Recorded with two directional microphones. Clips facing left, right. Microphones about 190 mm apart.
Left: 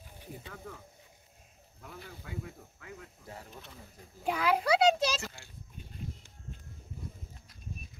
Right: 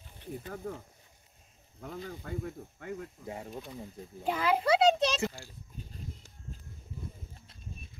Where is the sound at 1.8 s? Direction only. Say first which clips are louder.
Right 7 dB; 50° right (ahead or behind).